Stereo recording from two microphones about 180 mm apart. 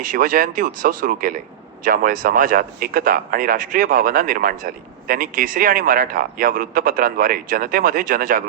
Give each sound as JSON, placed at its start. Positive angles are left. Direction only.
{"t": 0.0, "sound": "a man's voice", "side_deg": -50}